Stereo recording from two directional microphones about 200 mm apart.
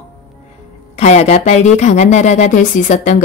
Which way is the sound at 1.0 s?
35° left (ahead or behind).